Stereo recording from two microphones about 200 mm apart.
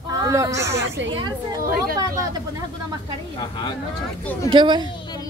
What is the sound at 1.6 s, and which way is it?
Speech, 45° right (ahead or behind).